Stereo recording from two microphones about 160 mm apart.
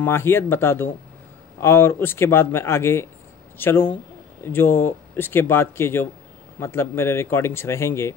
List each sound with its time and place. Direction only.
0.0 s speech: 15° left (ahead or behind)